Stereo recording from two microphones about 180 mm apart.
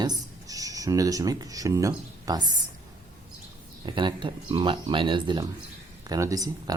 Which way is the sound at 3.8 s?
25° right (ahead or behind).